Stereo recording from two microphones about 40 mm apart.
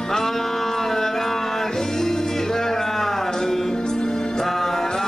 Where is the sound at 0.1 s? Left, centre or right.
Centre.